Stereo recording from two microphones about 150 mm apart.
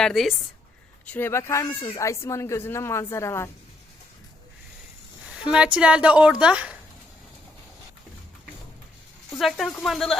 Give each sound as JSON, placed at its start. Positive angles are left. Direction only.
{"t": 0.0, "sound": "speech", "side_deg": 0}
{"t": 1.0, "sound": "speech", "side_deg": 10}
{"t": 5.2, "sound": "speech", "side_deg": -5}
{"t": 9.4, "sound": "speech", "side_deg": 0}